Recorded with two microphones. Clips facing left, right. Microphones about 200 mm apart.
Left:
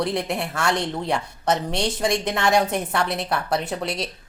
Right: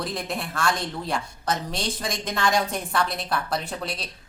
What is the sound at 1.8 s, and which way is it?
Speech, 70° left (ahead or behind).